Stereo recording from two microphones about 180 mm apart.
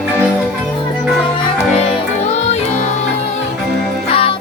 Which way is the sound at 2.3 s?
40° left (ahead or behind).